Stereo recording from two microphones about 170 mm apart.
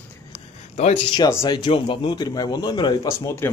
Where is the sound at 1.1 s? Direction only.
25° left (ahead or behind).